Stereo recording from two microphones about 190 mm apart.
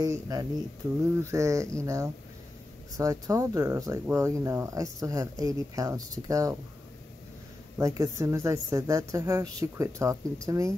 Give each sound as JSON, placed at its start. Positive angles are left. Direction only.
{"t": 0.0, "sound": "speech", "side_deg": -20}
{"t": 7.7, "sound": "speech", "side_deg": -15}